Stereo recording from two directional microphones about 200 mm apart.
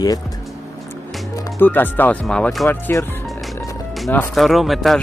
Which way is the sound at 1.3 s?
10° left (ahead or behind).